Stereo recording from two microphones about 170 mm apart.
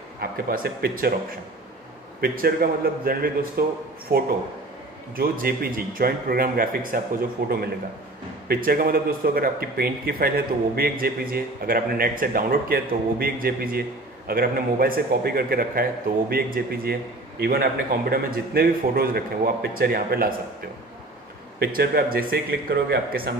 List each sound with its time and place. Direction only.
0.2 s speech: 60° right (ahead or behind)
21.5 s speech: 60° right (ahead or behind)